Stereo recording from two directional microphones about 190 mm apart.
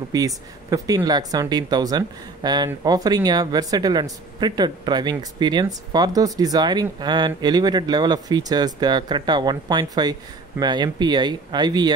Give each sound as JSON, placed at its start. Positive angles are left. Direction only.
{"t": 0.1, "sound": "speech", "side_deg": -20}